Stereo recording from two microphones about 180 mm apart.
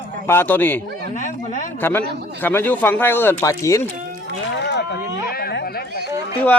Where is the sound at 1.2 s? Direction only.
45° left (ahead or behind).